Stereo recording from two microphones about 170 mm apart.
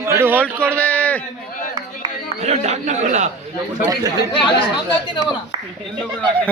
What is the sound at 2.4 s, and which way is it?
Speech, 40° right (ahead or behind).